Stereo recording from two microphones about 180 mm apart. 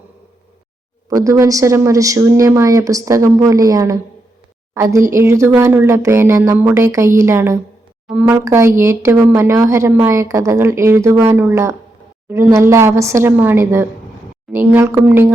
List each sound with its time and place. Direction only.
1.1 s speech: 20° right (ahead or behind)